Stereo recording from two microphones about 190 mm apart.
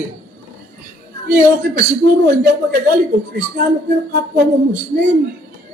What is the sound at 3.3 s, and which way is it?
Speech, 55° right (ahead or behind).